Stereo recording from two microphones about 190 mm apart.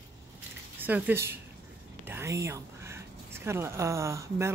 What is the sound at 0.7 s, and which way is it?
Speech, 10° right (ahead or behind).